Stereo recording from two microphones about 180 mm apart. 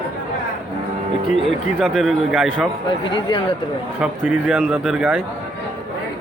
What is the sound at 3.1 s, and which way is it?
Speech, 25° left (ahead or behind).